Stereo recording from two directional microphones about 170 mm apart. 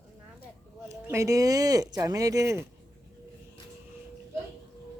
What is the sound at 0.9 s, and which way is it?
Speech, 15° right (ahead or behind).